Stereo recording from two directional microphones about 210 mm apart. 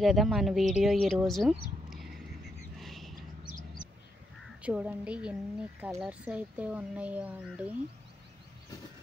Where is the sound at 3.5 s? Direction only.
45° left (ahead or behind).